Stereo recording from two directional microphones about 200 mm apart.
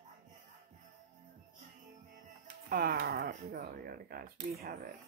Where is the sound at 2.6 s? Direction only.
50° right (ahead or behind).